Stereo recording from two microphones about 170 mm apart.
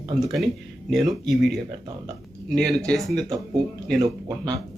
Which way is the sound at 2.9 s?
5° left (ahead or behind).